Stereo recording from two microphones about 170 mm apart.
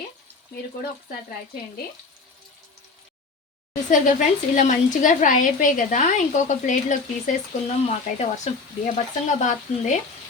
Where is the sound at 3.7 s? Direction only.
50° left (ahead or behind).